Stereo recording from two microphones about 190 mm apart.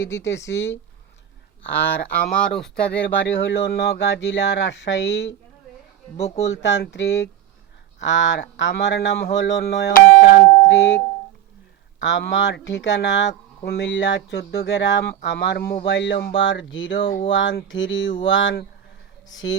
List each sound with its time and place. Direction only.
0.0 s speech: 70° left (ahead or behind)
0.5 s speech: 15° left (ahead or behind)
3.4 s speech: 60° left (ahead or behind)
6.1 s speech: 35° left (ahead or behind)
6.5 s speech: 65° left (ahead or behind); by 10.5 s 50° left (ahead or behind)
10.6 s music: 70° left (ahead or behind)
11.9 s speech: 70° left (ahead or behind)
13.6 s speech: 60° left (ahead or behind); by 17.1 s 75° left (ahead or behind)
17.2 s a sound: 75° left (ahead or behind)
19.3 s speech: 80° left